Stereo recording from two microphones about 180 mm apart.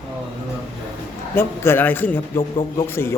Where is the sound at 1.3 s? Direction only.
10° left (ahead or behind).